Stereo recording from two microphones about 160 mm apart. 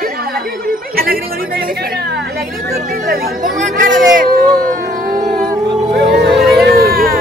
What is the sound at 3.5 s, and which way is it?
Speech, 55° right (ahead or behind).